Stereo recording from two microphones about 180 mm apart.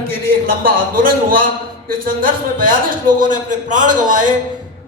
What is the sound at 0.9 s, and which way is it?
A man's voice, 50° right (ahead or behind).